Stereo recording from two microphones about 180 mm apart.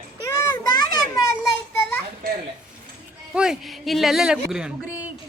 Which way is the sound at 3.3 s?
5° right (ahead or behind).